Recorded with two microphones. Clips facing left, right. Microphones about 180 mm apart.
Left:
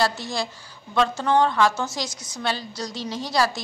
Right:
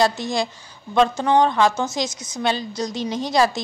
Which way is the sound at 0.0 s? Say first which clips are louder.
Right 4 dB; 20° right (ahead or behind).